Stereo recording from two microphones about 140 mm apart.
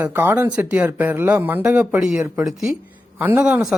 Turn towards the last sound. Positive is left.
turn(degrees=-5)  # may be behind; listen again after turning